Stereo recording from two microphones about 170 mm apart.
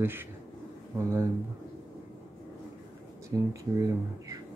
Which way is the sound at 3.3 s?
20° right (ahead or behind).